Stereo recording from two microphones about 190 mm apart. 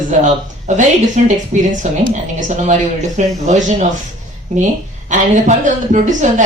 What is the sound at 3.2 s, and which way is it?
Speech, 40° right (ahead or behind).